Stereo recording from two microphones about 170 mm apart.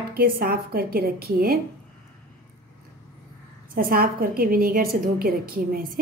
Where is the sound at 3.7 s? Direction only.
60° right (ahead or behind).